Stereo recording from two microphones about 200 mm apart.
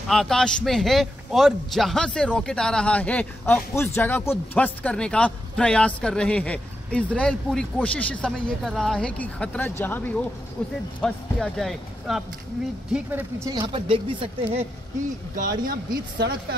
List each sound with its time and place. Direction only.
0.1 s a man's voice: 5° left (ahead or behind)
12.9 s speech: 10° right (ahead or behind); by 14.6 s 25° right (ahead or behind)
15.3 s speech: 45° right (ahead or behind)